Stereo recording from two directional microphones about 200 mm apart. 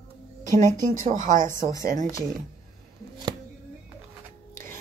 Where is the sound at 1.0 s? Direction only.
40° right (ahead or behind).